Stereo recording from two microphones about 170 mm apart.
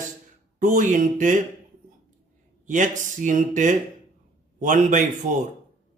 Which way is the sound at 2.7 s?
50° right (ahead or behind).